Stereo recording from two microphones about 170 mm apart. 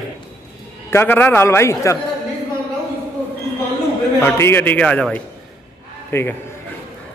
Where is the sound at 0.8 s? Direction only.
15° left (ahead or behind).